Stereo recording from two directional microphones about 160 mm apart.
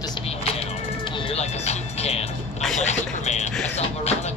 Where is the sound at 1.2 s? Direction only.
40° left (ahead or behind).